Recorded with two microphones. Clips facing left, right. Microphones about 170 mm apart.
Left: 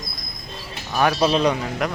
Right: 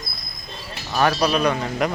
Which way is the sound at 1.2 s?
25° left (ahead or behind).